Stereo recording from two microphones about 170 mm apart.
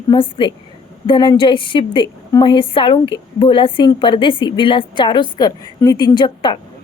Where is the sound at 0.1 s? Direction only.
30° left (ahead or behind).